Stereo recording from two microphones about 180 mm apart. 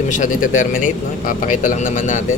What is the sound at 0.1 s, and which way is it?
Speech, 45° left (ahead or behind).